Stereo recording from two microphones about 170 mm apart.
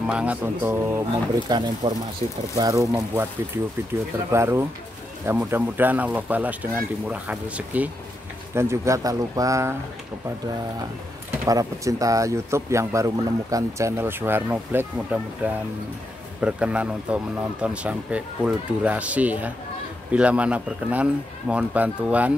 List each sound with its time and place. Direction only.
0.0 s speech: 5° right (ahead or behind)
1.5 s speech: 25° right (ahead or behind)
11.4 s speech: 20° right (ahead or behind)